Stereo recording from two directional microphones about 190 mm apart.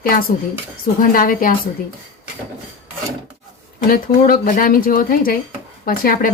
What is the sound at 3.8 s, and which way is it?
Speech, 50° left (ahead or behind).